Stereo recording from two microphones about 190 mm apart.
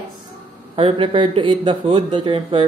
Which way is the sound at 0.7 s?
30° right (ahead or behind).